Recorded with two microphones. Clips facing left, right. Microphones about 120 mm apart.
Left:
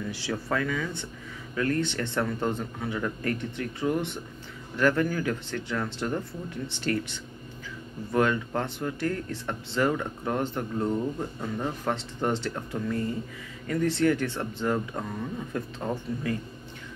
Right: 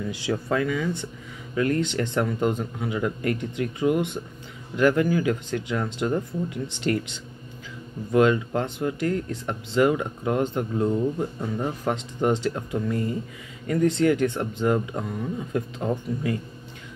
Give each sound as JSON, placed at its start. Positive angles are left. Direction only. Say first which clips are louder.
{"t": 0.1, "sound": "speech", "louder": "right 5 dB", "side_deg": -20}